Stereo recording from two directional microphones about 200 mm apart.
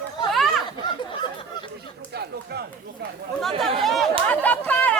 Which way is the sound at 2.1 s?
55° right (ahead or behind).